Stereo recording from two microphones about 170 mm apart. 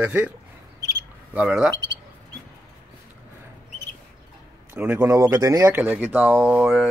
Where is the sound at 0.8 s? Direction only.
10° right (ahead or behind).